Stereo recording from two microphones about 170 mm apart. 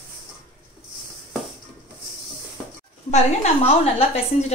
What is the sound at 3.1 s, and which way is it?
A woman's voice, 40° left (ahead or behind).